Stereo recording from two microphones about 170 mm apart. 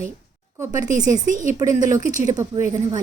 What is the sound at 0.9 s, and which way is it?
Speech, 45° right (ahead or behind).